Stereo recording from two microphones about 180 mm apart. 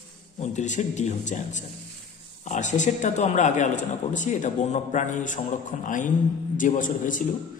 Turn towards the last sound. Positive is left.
turn(degrees=45)  # may be behind; listen again after turning